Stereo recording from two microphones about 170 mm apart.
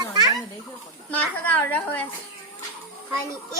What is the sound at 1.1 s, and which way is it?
Speech, 10° left (ahead or behind).